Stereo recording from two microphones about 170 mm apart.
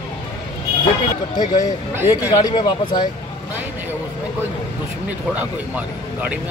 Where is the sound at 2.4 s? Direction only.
25° left (ahead or behind).